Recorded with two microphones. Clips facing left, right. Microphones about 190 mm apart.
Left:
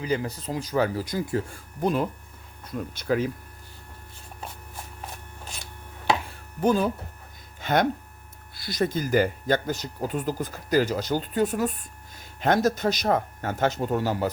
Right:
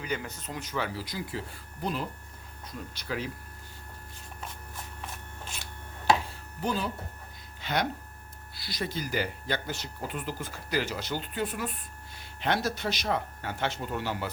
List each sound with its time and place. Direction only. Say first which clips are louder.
0.0 s speech: left 7 dB; 30° left (ahead or behind); by 3.2 s 50° left (ahead or behind)
6.6 s speech: left 9 dB; 50° left (ahead or behind)